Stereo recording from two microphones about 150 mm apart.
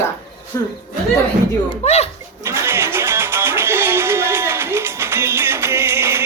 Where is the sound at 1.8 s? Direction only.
45° left (ahead or behind).